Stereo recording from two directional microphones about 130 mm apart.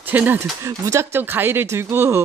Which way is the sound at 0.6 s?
25° right (ahead or behind).